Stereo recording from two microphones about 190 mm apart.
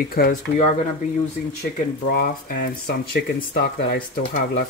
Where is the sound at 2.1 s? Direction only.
50° left (ahead or behind).